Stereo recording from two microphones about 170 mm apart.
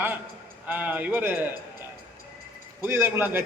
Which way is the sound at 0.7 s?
10° right (ahead or behind).